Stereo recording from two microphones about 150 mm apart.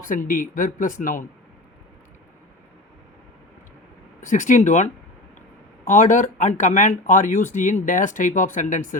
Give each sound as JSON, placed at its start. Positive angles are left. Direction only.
{"t": 0.0, "sound": "speech", "side_deg": 60}
{"t": 4.2, "sound": "speech", "side_deg": 60}